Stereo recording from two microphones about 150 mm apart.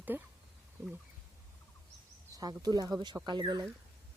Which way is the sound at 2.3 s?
25° right (ahead or behind).